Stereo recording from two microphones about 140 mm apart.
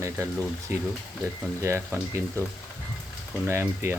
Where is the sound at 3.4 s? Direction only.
20° right (ahead or behind).